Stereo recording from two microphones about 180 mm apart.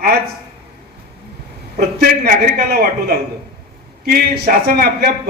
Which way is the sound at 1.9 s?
60° right (ahead or behind).